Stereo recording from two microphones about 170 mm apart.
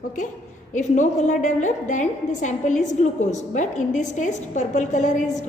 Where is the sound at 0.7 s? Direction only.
45° left (ahead or behind).